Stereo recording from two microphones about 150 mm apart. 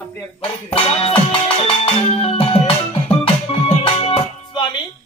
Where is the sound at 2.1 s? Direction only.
40° left (ahead or behind).